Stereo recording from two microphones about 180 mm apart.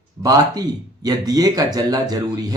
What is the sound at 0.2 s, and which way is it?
Speech, 20° right (ahead or behind).